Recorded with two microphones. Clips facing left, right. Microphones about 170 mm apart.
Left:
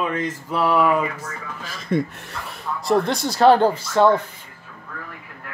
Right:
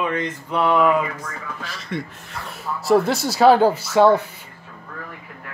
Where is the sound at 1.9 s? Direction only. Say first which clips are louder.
Left 7 dB; 40° left (ahead or behind).